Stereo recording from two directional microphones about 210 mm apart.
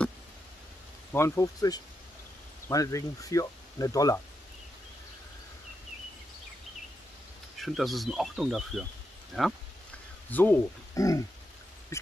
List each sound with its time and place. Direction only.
1.1 s speech: 15° left (ahead or behind)
7.6 s speech: centre (ahead or behind)
10.3 s speech: 10° left (ahead or behind)
11.9 s dog: 15° left (ahead or behind)